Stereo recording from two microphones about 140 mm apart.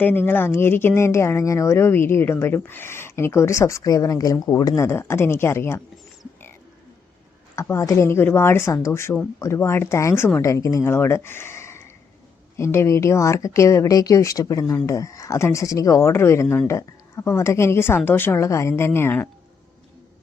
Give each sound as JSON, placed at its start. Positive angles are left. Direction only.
{"t": 0.0, "sound": "speech", "side_deg": 15}
{"t": 7.5, "sound": "speech", "side_deg": 20}